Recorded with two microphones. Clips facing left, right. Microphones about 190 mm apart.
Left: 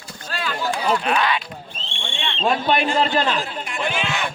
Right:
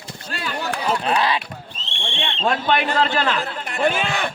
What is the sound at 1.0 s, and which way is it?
Speech, 35° right (ahead or behind).